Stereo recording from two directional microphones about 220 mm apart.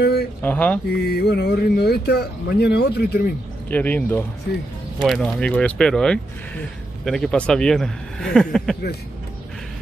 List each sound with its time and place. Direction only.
0.0 s a sound: 45° left (ahead or behind)
0.4 s speech: 5° left (ahead or behind)
0.9 s speech: 45° left (ahead or behind)
3.7 s speech: 10° left (ahead or behind)